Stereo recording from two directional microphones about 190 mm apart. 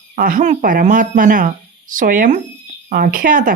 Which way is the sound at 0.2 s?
45° right (ahead or behind).